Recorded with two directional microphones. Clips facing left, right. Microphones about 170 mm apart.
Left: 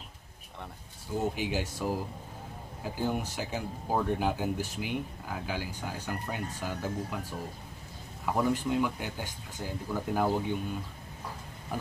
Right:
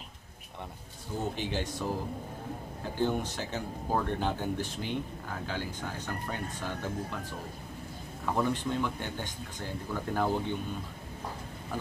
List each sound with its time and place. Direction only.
1.2 s speech: 10° left (ahead or behind)
8.4 s speech: 10° left (ahead or behind)